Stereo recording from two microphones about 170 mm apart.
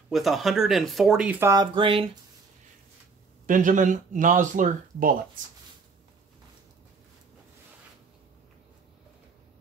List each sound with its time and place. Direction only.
0.1 s speech: centre (ahead or behind); by 2.0 s 30° right (ahead or behind)
3.4 s speech: 50° right (ahead or behind)